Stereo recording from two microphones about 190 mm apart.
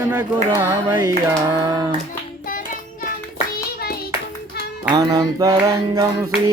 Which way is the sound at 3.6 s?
55° left (ahead or behind).